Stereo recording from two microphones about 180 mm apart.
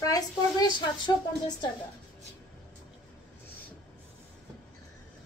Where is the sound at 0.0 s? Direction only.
20° left (ahead or behind).